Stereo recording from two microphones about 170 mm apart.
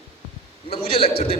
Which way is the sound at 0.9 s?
35° left (ahead or behind).